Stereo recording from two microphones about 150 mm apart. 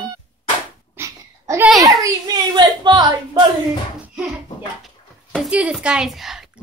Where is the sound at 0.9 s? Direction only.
20° right (ahead or behind).